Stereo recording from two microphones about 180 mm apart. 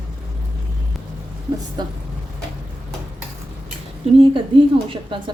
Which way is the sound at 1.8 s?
25° right (ahead or behind).